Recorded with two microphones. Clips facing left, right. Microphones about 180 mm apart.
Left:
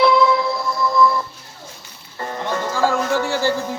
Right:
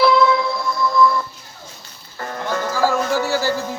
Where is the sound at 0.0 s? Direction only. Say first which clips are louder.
Even; centre (ahead or behind).